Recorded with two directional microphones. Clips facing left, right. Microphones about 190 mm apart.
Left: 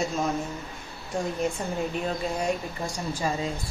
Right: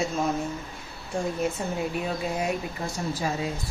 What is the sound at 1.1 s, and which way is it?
A woman's voice, 5° right (ahead or behind).